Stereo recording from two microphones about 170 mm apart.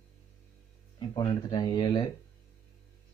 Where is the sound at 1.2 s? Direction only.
25° left (ahead or behind).